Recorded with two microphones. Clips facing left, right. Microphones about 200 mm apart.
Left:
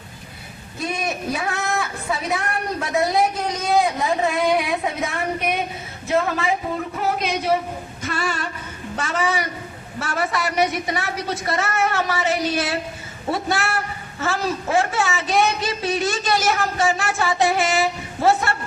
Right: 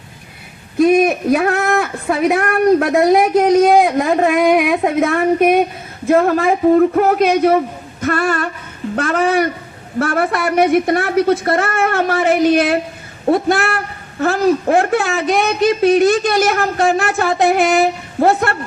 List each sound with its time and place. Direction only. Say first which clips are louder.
0.8 s speech: right 15 dB; 60° right (ahead or behind)
8.0 s a sound: right 10 dB; 60° right (ahead or behind)
9.0 s speech: right 8 dB; 55° right (ahead or behind)